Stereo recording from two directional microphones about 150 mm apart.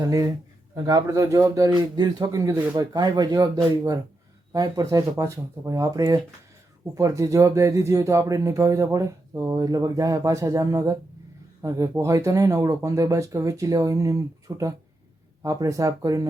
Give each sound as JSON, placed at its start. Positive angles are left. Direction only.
{"t": 0.0, "sound": "speech", "side_deg": -20}